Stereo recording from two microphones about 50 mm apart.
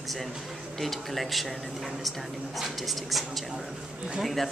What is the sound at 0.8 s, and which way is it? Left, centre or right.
Speech, centre.